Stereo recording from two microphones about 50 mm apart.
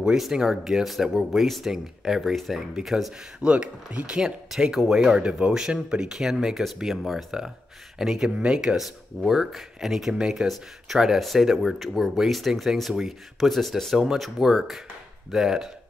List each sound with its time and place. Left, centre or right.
0.2 s speech: centre
3.3 s speech: right
5.1 s speech: right; by 7.2 s centre
7.2 s speech: centre
8.7 s speech: centre